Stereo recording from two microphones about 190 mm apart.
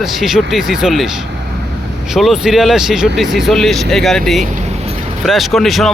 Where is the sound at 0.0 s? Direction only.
Centre (ahead or behind).